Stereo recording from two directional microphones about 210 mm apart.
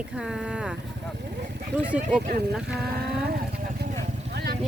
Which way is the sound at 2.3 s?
50° right (ahead or behind).